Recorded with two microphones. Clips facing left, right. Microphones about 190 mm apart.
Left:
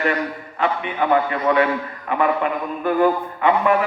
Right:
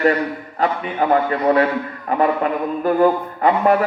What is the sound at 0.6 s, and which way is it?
A man's voice, 35° right (ahead or behind).